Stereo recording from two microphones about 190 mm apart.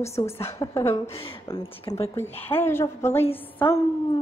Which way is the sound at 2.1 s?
10° left (ahead or behind).